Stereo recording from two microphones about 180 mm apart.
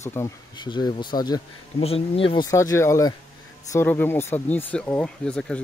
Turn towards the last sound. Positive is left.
turn(degrees=5)  # may be behind; listen again after turning